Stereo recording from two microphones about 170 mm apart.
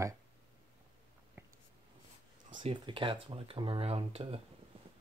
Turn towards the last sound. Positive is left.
turn(degrees=-35)  # may be behind; listen again after turning